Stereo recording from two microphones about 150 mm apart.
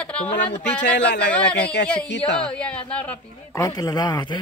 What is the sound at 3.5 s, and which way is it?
Speech, 25° left (ahead or behind).